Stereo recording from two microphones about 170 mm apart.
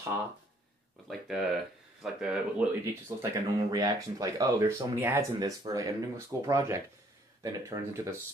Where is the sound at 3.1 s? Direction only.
25° right (ahead or behind).